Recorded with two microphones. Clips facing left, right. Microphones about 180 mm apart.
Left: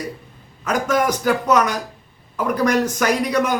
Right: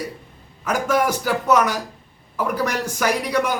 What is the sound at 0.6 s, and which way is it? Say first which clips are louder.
A man's voice: left 1 dB; 10° right (ahead or behind).